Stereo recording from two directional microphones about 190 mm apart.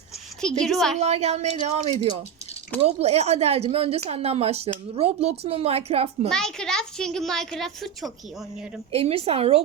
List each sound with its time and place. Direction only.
0.4 s a woman's voice: centre (ahead or behind)
0.9 s speech: 35° right (ahead or behind)
6.2 s a woman's voice: 5° left (ahead or behind)
8.9 s speech: 30° right (ahead or behind)